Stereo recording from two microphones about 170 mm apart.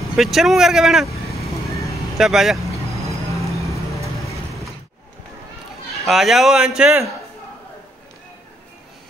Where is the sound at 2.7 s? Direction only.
20° right (ahead or behind).